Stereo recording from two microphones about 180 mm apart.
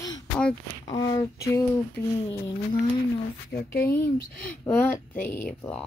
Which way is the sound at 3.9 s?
10° left (ahead or behind).